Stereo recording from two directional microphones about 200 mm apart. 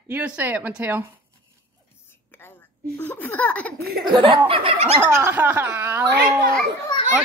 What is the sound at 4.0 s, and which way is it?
Speech, 25° right (ahead or behind).